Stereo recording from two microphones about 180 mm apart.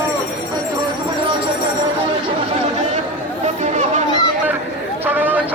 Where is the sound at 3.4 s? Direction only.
40° right (ahead or behind).